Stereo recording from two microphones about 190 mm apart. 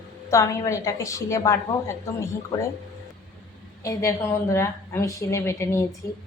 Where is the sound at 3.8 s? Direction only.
15° left (ahead or behind).